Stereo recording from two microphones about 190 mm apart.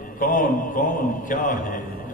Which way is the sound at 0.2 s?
45° left (ahead or behind).